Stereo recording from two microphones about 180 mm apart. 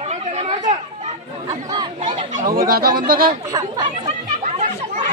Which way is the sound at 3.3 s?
20° right (ahead or behind).